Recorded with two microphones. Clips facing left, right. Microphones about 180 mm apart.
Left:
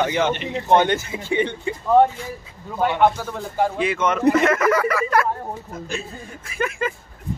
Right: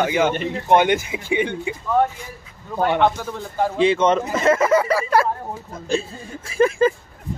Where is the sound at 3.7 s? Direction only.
30° right (ahead or behind).